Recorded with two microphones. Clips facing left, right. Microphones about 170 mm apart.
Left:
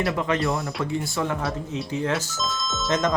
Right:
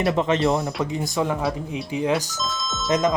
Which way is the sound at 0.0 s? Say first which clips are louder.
Right 4 dB; 25° right (ahead or behind).